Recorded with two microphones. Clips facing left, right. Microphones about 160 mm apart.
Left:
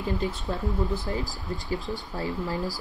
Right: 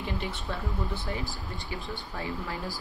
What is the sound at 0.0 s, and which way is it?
Speech, 35° left (ahead or behind).